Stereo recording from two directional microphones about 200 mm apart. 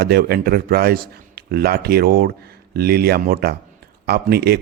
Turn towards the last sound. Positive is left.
turn(degrees=-50)  # may be behind; listen again after turning